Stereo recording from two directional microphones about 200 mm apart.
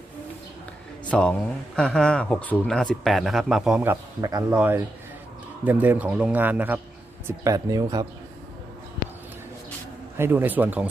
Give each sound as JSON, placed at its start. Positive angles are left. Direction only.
{"t": 1.1, "sound": "a man's voice", "side_deg": 5}
{"t": 10.2, "sound": "a man's voice", "side_deg": -10}